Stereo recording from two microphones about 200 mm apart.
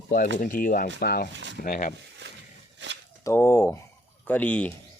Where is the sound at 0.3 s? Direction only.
40° left (ahead or behind).